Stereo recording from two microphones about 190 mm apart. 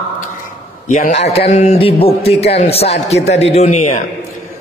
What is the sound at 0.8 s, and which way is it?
A man's voice, 40° left (ahead or behind).